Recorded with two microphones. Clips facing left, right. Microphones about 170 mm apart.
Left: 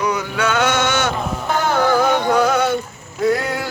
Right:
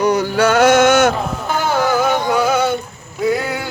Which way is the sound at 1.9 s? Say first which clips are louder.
Even; centre (ahead or behind).